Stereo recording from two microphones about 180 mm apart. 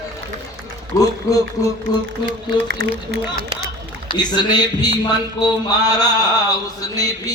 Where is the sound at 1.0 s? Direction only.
20° left (ahead or behind).